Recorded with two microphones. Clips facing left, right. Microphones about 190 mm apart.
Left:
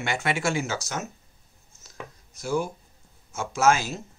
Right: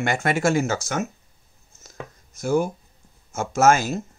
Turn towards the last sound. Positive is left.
turn(degrees=-50)  # may be behind; listen again after turning